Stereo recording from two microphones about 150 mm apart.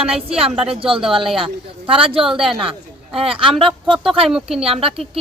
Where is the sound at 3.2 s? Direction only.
35° right (ahead or behind).